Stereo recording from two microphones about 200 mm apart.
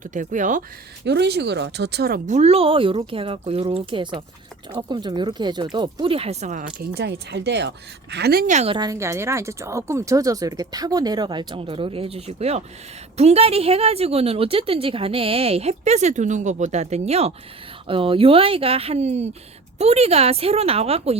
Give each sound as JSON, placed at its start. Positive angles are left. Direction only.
{"t": 0.0, "sound": "a woman's voice", "side_deg": -40}
{"t": 1.0, "sound": "a woman's voice", "side_deg": -55}